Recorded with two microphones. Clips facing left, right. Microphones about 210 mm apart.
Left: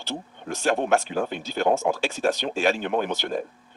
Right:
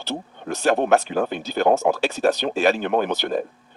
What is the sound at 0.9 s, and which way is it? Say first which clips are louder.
Speech: right 4 dB; 55° right (ahead or behind).